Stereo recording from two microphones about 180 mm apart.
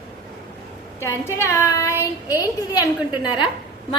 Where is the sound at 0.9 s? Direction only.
15° left (ahead or behind).